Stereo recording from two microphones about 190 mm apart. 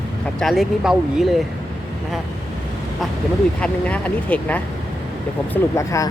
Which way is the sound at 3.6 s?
5° left (ahead or behind).